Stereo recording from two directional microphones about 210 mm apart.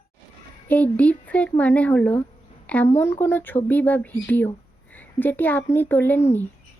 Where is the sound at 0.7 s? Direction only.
5° left (ahead or behind).